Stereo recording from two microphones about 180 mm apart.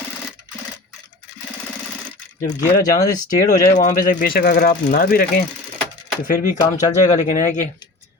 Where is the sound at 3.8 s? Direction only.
45° left (ahead or behind).